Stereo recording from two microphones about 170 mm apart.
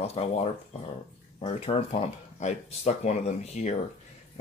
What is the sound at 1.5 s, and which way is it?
Speech, 35° left (ahead or behind).